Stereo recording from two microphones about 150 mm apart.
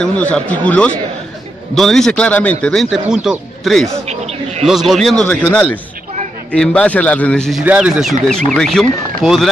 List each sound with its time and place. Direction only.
0.0 s a man's voice: 10° left (ahead or behind)
4.1 s bird: 45° right (ahead or behind)
4.6 s a man's voice: centre (ahead or behind)